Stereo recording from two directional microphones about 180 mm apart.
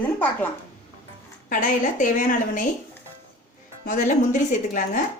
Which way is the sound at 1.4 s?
50° left (ahead or behind).